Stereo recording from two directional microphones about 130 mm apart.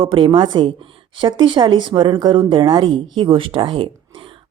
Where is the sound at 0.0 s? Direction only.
40° right (ahead or behind).